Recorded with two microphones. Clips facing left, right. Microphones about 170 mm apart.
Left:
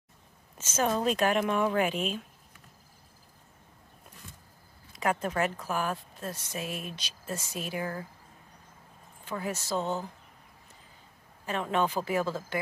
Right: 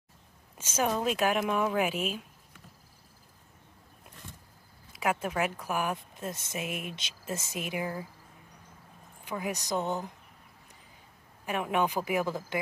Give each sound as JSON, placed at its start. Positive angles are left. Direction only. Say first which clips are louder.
{"t": 0.6, "sound": "speech", "louder": "left 1 dB", "side_deg": -10}
{"t": 4.9, "sound": "a woman's voice", "louder": "left 1 dB", "side_deg": -5}
{"t": 9.2, "sound": "speech", "louder": "even", "side_deg": -15}
{"t": 11.4, "sound": "speech", "louder": "even", "side_deg": -15}